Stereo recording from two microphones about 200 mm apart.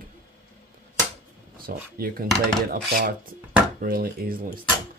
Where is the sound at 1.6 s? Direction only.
45° right (ahead or behind).